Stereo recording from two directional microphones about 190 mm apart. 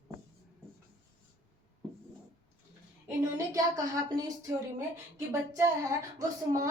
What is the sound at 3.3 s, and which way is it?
Speech, 20° right (ahead or behind).